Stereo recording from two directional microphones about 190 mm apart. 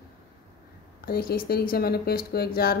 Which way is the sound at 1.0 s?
50° left (ahead or behind).